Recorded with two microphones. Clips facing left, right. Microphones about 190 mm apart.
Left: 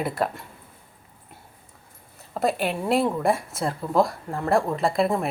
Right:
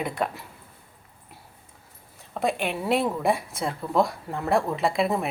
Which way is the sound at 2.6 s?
Centre (ahead or behind).